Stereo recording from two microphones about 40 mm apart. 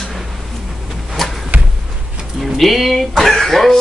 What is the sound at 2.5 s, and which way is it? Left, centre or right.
A man's voice, centre.